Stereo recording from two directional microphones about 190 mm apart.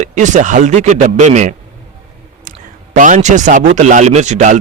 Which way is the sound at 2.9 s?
45° right (ahead or behind).